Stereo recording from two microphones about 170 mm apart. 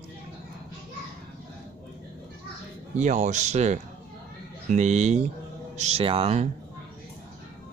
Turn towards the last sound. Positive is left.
turn(degrees=-40)  # may be behind; listen again after turning